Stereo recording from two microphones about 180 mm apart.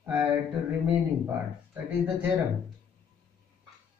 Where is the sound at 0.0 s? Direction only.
10° right (ahead or behind).